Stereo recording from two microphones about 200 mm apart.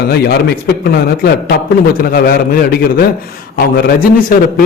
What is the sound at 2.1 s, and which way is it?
Speech, 50° left (ahead or behind).